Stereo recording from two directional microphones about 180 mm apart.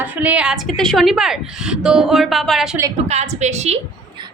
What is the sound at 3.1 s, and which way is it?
Speech, 35° right (ahead or behind).